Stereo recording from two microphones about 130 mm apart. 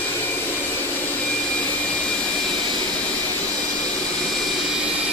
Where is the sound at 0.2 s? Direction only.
15° left (ahead or behind).